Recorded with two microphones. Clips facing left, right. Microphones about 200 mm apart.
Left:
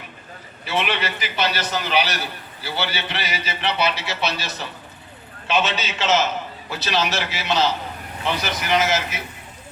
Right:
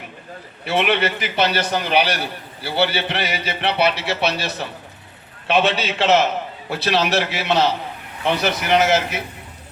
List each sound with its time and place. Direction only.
0.6 s a man's voice: 60° right (ahead or behind)